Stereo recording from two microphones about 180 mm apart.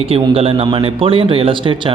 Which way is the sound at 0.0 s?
35° right (ahead or behind).